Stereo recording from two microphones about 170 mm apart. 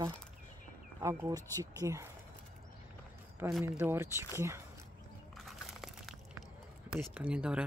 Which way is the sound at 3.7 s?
10° right (ahead or behind).